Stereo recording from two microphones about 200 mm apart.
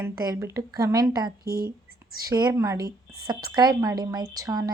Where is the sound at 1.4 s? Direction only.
50° right (ahead or behind).